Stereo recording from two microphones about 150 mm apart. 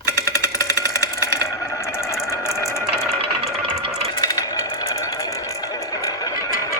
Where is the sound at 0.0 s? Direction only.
20° left (ahead or behind).